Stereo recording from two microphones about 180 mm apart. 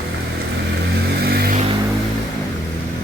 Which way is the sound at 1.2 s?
60° right (ahead or behind).